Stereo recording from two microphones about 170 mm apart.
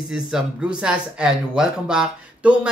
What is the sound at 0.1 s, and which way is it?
Speech, 5° right (ahead or behind).